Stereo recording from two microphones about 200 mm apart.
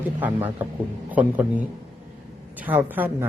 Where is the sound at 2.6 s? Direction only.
10° right (ahead or behind).